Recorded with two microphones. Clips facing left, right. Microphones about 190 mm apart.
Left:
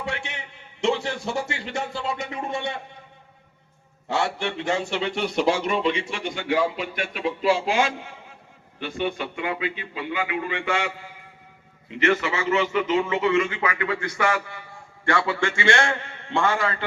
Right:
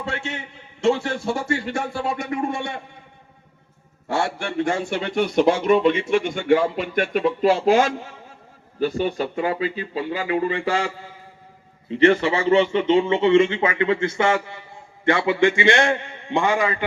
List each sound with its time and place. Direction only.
0.0 s a sound: 15° left (ahead or behind)
0.9 s speech: 20° left (ahead or behind)
4.2 s a man's voice: 50° right (ahead or behind); by 16.8 s 15° right (ahead or behind)